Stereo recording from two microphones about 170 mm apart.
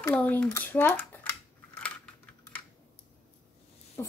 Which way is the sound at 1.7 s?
5° left (ahead or behind).